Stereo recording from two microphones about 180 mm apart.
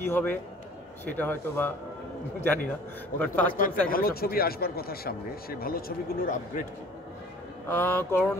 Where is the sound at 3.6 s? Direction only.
50° left (ahead or behind).